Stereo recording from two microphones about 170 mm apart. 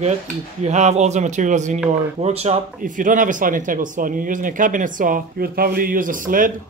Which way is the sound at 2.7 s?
50° right (ahead or behind).